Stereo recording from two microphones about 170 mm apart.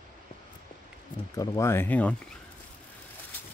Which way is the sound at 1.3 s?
20° left (ahead or behind).